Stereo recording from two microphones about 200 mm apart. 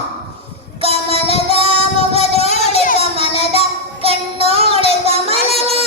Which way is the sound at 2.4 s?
35° left (ahead or behind).